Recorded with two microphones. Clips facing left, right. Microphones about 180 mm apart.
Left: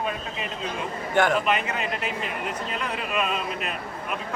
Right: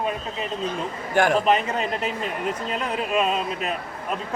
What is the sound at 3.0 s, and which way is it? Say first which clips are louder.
Opera: right 5 dB; 40° right (ahead or behind).